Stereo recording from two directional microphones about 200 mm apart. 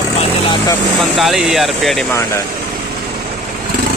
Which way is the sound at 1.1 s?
Centre (ahead or behind).